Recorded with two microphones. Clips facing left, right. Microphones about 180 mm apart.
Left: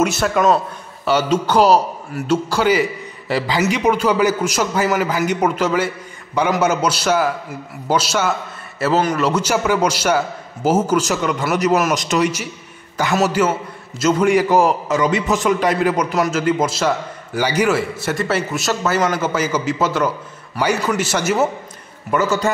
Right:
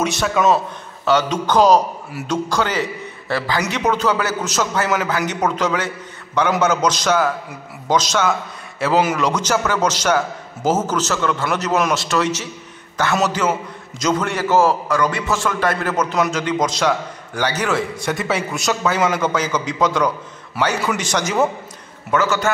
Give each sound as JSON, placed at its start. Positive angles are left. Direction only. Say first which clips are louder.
{"t": 0.0, "sound": "a man's voice", "louder": "left 2 dB", "side_deg": 5}